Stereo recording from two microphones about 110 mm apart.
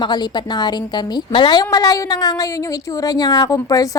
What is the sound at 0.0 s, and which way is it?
A woman's voice, 40° left (ahead or behind).